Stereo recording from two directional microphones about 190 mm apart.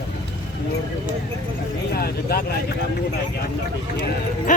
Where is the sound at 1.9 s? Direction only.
55° left (ahead or behind).